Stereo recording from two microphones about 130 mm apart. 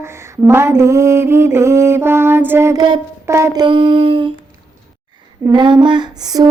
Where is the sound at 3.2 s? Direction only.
20° right (ahead or behind); by 4.3 s 40° right (ahead or behind).